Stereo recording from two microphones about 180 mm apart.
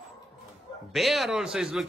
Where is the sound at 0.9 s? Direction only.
Centre (ahead or behind).